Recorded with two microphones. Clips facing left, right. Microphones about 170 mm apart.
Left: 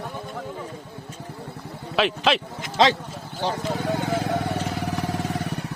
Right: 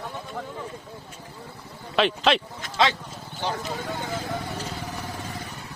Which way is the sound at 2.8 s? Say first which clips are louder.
Left 4 dB; 35° left (ahead or behind).